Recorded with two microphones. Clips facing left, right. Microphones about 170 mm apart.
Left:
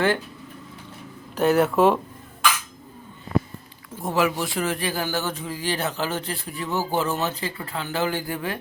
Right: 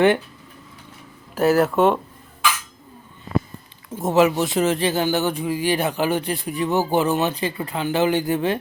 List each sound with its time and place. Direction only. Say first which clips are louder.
1.4 s speech: right 2 dB; centre (ahead or behind)
3.9 s speech: right 6 dB; 20° right (ahead or behind)